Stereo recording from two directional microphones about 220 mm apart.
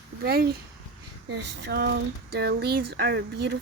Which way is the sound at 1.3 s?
50° right (ahead or behind).